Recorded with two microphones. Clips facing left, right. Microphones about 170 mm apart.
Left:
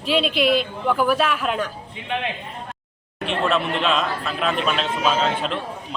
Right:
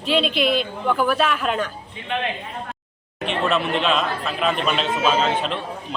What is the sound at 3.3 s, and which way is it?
A woman's voice, centre (ahead or behind).